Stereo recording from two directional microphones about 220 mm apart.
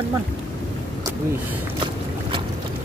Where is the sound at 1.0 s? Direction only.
10° right (ahead or behind).